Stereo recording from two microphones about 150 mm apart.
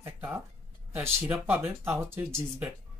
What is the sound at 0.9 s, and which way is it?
Speech, 15° right (ahead or behind).